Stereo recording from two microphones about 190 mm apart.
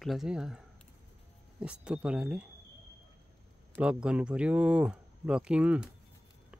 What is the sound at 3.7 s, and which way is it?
Speech, 5° right (ahead or behind).